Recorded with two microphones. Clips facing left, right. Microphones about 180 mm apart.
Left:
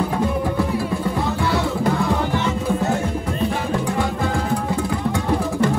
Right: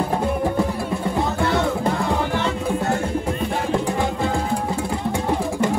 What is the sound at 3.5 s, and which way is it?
Music, 35° right (ahead or behind).